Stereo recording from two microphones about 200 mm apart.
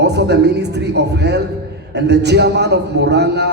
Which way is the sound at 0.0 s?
55° right (ahead or behind).